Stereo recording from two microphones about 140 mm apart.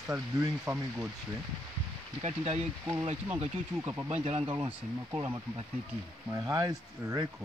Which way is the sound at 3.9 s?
15° right (ahead or behind).